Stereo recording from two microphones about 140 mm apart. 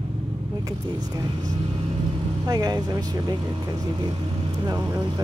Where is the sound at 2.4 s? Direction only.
25° right (ahead or behind).